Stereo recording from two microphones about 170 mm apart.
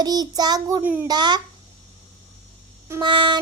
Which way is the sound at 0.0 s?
25° right (ahead or behind).